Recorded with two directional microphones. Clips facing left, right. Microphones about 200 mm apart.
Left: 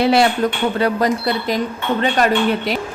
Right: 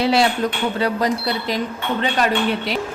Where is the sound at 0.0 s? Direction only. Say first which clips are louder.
Left 3 dB; 55° left (ahead or behind).